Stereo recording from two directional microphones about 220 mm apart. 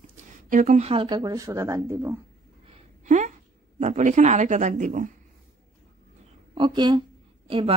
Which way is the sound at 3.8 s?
35° right (ahead or behind).